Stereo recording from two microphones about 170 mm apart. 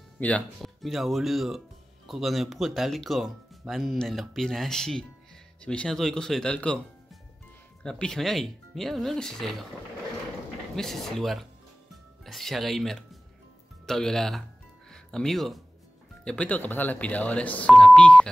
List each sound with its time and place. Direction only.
0.2 s speech: 5° left (ahead or behind)
10.8 s speech: centre (ahead or behind)